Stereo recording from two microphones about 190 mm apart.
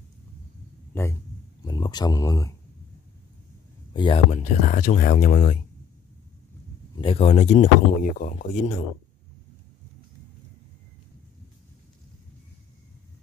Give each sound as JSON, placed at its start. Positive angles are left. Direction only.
{"t": 1.6, "sound": "a sound", "side_deg": 20}
{"t": 3.9, "sound": "speech", "side_deg": 25}
{"t": 4.3, "sound": "speech", "side_deg": 40}
{"t": 7.0, "sound": "speech", "side_deg": 30}